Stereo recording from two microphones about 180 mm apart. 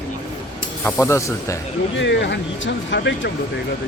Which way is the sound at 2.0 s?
75° left (ahead or behind).